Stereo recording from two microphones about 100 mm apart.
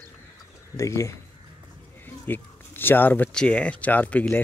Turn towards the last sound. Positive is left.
turn(degrees=15)  # may be behind; listen again after turning